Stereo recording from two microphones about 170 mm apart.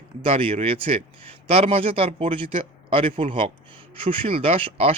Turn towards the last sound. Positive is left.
turn(degrees=-35)  # may be behind; listen again after turning